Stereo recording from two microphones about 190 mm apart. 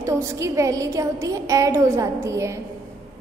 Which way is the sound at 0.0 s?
15° right (ahead or behind).